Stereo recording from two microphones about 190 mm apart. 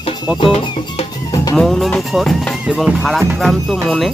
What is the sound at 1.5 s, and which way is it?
Music, centre (ahead or behind).